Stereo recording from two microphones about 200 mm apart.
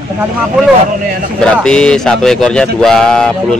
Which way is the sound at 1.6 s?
5° left (ahead or behind).